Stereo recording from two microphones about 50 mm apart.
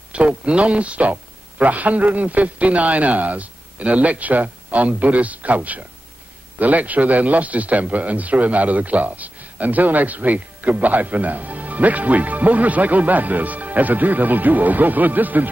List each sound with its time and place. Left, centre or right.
0.1 s a man's voice: right